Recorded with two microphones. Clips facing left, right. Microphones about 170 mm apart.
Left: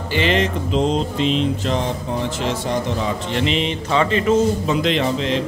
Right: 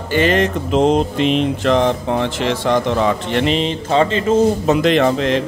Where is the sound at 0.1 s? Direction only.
50° right (ahead or behind); by 3.4 s 65° right (ahead or behind).